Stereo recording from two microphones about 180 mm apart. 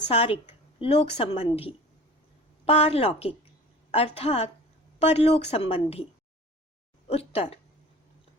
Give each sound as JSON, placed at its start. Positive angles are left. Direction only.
{"t": 0.1, "sound": "a woman's voice", "side_deg": 35}
{"t": 7.1, "sound": "a woman's voice", "side_deg": 35}